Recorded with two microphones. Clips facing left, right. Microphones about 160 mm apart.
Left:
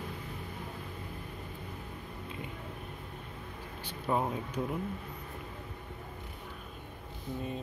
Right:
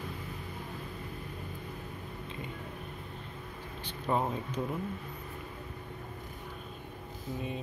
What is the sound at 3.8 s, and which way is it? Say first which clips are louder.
Air conditioning: even; 10° left (ahead or behind).